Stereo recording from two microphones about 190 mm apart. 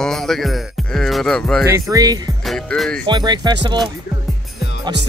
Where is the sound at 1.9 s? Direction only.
20° right (ahead or behind).